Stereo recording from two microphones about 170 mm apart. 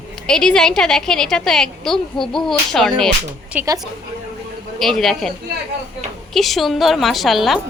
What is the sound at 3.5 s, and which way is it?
Speech, 20° right (ahead or behind).